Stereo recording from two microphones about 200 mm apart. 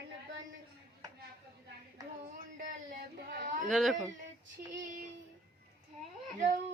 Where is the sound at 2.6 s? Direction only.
40° right (ahead or behind).